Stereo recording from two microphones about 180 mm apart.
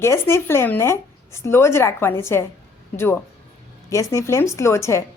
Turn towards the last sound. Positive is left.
turn(degrees=15)  # may be behind; listen again after turning